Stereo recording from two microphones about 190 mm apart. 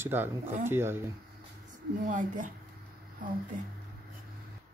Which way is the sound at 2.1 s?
45° right (ahead or behind).